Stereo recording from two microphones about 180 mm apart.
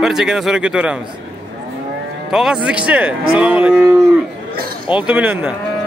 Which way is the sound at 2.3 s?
5° right (ahead or behind).